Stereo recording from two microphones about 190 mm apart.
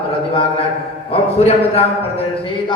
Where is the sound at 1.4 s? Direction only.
35° left (ahead or behind).